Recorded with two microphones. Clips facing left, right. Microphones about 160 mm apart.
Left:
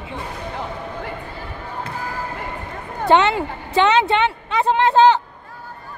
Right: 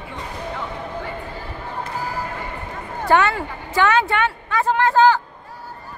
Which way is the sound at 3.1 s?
20° left (ahead or behind).